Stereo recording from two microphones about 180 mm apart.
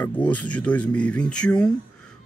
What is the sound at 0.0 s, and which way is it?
Speech, 10° left (ahead or behind).